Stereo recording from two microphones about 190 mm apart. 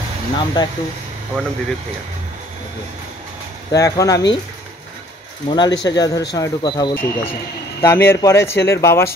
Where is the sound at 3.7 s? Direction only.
20° left (ahead or behind).